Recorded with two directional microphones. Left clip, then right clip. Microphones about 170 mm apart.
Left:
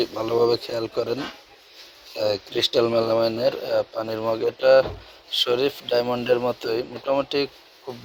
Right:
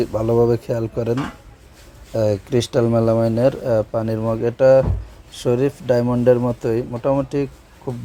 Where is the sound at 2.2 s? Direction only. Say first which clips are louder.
Right 3 dB; 10° right (ahead or behind).